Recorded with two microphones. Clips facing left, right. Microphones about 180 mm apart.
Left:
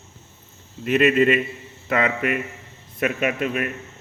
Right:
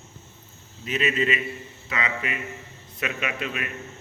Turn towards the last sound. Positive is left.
turn(degrees=45)  # may be behind; listen again after turning